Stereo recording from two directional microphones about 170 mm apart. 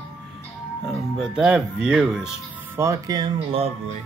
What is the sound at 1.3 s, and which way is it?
Speech, 5° right (ahead or behind).